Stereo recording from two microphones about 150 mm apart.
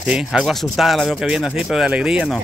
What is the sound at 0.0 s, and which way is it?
Speech, 5° right (ahead or behind).